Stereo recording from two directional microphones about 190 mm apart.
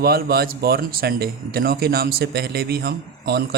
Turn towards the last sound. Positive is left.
turn(degrees=-60)  # may be behind; listen again after turning